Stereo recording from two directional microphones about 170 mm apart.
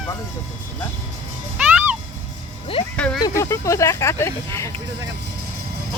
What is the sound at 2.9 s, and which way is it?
Speech, 5° left (ahead or behind).